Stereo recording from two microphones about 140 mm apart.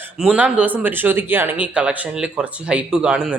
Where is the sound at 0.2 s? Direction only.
10° right (ahead or behind).